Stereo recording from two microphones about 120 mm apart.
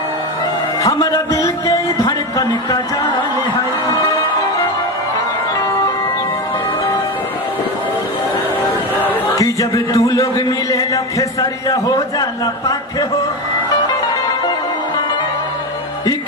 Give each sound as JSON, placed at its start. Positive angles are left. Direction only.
{"t": 0.8, "sound": "music", "side_deg": 30}
{"t": 9.3, "sound": "speech", "side_deg": 30}